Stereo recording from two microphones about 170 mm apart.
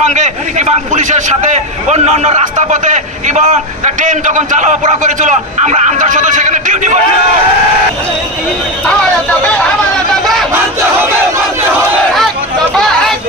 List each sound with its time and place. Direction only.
0.0 s a man's voice: 45° right (ahead or behind)
10.5 s battle cry: 15° right (ahead or behind)